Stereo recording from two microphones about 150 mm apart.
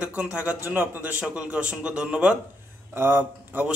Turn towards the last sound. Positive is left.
turn(degrees=-10)  # may be behind; listen again after turning